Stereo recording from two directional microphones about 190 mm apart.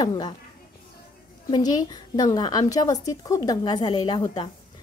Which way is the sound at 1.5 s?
20° left (ahead or behind).